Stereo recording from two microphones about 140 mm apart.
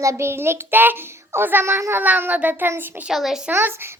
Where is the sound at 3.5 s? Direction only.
15° right (ahead or behind).